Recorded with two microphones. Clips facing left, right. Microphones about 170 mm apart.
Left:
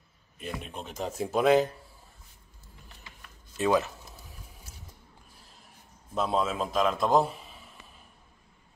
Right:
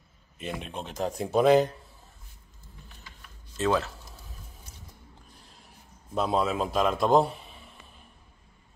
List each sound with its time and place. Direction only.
0.4 s a man's voice: centre (ahead or behind)
3.5 s a sound: 15° left (ahead or behind)
6.1 s a man's voice: centre (ahead or behind)